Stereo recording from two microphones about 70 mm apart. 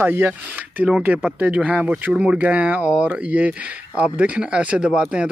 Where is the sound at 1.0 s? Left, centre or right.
Centre.